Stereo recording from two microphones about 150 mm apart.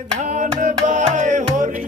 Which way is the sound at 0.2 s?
55° right (ahead or behind).